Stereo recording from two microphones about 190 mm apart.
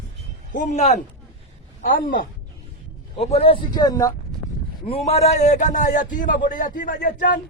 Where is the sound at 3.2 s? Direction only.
30° left (ahead or behind).